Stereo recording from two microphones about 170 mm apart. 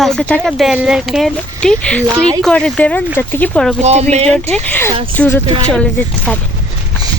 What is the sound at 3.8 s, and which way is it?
Speech, 40° right (ahead or behind).